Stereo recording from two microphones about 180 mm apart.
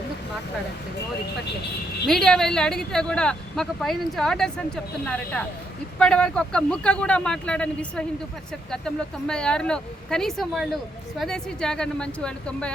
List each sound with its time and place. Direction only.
2.0 s speech: centre (ahead or behind)